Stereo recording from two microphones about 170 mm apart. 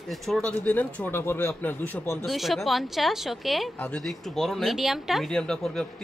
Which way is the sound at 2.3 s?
Centre (ahead or behind).